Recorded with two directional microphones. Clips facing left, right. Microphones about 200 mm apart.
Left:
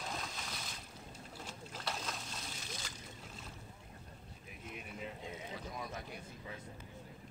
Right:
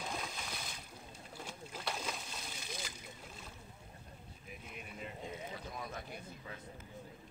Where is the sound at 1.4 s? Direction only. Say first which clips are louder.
Right 2 dB; centre (ahead or behind).